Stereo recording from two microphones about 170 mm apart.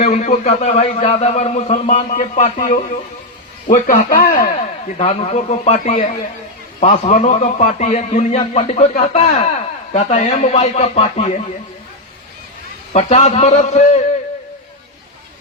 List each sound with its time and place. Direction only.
0.0 s a man's voice: 40° left (ahead or behind); by 4.4 s 55° left (ahead or behind)
4.9 s a man's voice: 35° left (ahead or behind)
12.9 s a man's voice: 40° left (ahead or behind)